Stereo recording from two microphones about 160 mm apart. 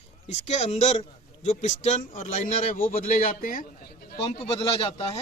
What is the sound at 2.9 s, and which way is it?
Speech, 60° left (ahead or behind).